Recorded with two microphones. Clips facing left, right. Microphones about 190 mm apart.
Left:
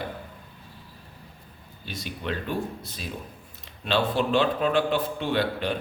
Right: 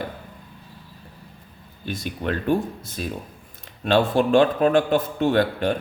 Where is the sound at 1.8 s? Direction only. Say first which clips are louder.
Right 6 dB; 50° right (ahead or behind).